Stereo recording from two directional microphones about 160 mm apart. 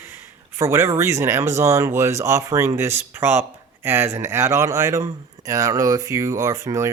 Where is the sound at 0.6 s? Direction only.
15° right (ahead or behind).